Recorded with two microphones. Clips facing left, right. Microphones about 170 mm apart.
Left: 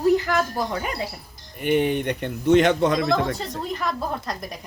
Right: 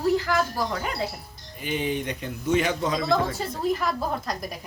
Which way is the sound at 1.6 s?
60° left (ahead or behind).